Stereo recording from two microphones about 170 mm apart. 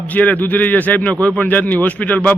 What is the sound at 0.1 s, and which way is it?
Speech, 10° left (ahead or behind).